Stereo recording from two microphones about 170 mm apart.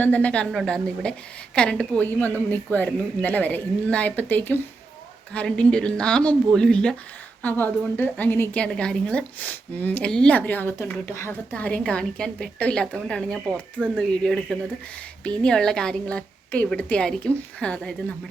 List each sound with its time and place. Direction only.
0.0 s a woman's voice: 10° left (ahead or behind)
13.5 s speech: 10° right (ahead or behind)
14.3 s a woman's voice: 5° left (ahead or behind)